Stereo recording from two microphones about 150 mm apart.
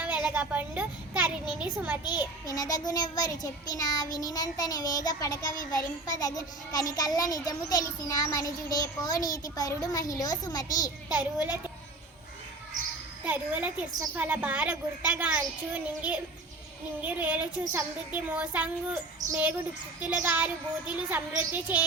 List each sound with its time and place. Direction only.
0.3 s a sound: 10° right (ahead or behind)
2.0 s a child's voice: 25° left (ahead or behind)
11.3 s a woman's voice: 10° right (ahead or behind)
13.2 s a woman's voice: 10° right (ahead or behind)